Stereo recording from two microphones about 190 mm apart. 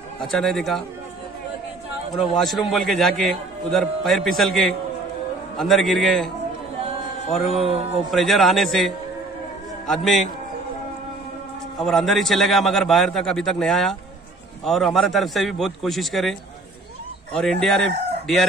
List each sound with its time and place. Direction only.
0.2 s a man's voice: centre (ahead or behind)
2.1 s a man's voice: centre (ahead or behind)
7.5 s speech: 30° right (ahead or behind)
8.1 s a man's voice: centre (ahead or behind)
11.8 s a man's voice: centre (ahead or behind)